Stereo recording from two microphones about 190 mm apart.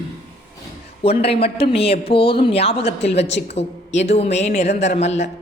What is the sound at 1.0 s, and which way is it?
A man's voice, 30° left (ahead or behind).